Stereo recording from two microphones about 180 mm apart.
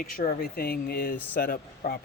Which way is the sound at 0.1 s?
55° left (ahead or behind).